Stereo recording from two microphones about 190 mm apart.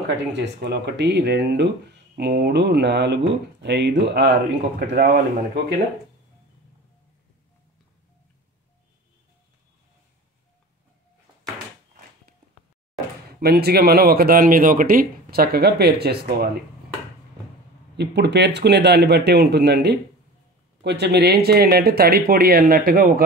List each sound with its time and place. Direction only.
0.3 s speech: 65° right (ahead or behind)
4.7 s speech: 50° right (ahead or behind)
13.4 s speech: 55° right (ahead or behind)
17.9 s speech: 65° right (ahead or behind)